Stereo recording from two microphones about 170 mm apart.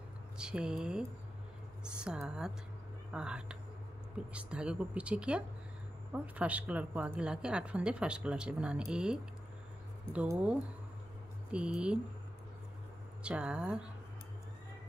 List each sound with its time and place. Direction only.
0.4 s a woman's voice: 5° right (ahead or behind)
13.2 s a woman's voice: 5° right (ahead or behind)